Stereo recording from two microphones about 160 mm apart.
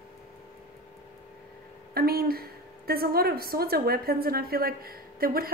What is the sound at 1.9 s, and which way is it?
A woman's voice, 70° right (ahead or behind).